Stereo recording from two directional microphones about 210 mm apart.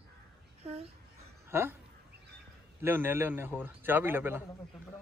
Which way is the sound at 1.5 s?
10° right (ahead or behind).